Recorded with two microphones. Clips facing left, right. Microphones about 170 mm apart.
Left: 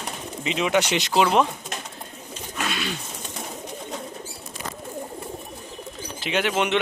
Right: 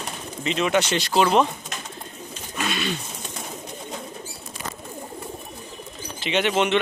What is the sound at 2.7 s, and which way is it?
Bird, 5° left (ahead or behind).